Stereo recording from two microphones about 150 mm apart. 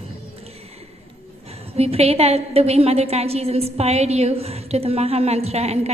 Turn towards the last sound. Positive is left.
turn(degrees=-45)  # may be behind; listen again after turning